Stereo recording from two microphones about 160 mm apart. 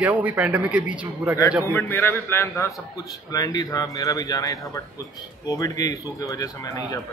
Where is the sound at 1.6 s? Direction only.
15° left (ahead or behind).